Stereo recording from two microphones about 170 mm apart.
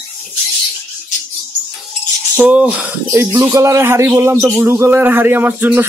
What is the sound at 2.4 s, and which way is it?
Speech, 10° right (ahead or behind).